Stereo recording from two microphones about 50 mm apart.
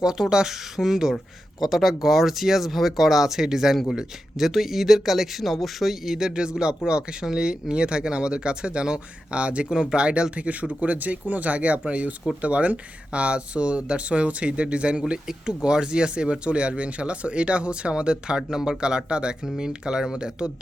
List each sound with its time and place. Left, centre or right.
0.0 s speech: centre